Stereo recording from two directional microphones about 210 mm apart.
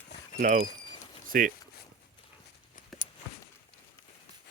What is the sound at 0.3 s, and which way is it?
Speech, 35° right (ahead or behind).